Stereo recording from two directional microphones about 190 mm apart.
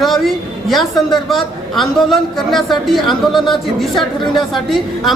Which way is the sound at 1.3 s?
Centre (ahead or behind).